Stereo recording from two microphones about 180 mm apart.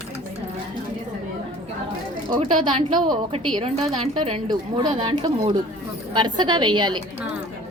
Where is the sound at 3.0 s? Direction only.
25° right (ahead or behind).